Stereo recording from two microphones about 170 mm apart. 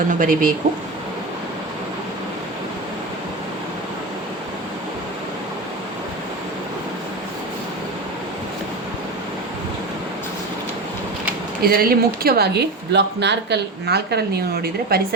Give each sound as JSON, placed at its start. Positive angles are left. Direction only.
{"t": 0.1, "sound": "speech", "side_deg": -50}
{"t": 11.6, "sound": "speech", "side_deg": -60}